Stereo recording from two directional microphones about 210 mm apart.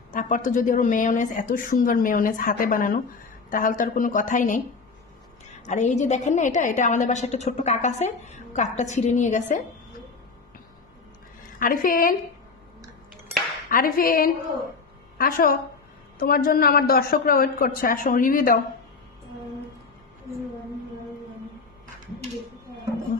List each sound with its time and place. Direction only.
0.1 s a woman's voice: 35° left (ahead or behind)
11.6 s a woman's voice: 40° left (ahead or behind)
13.7 s a woman's voice: 40° left (ahead or behind)